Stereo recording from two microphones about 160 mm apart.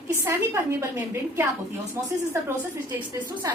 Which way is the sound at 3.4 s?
20° right (ahead or behind).